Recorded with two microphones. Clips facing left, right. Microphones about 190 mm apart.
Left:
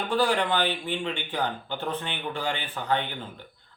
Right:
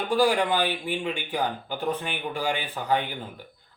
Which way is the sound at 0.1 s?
10° right (ahead or behind).